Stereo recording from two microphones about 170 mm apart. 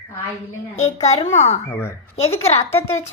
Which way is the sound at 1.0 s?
40° left (ahead or behind).